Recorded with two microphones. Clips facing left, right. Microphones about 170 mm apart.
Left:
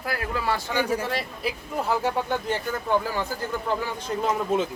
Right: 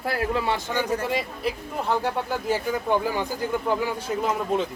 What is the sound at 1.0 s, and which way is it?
Speech, 15° right (ahead or behind).